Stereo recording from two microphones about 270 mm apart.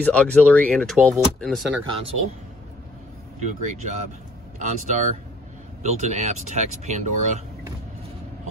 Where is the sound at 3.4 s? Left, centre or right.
Right.